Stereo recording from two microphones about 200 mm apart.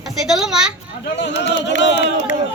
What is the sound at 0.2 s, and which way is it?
Speech, centre (ahead or behind).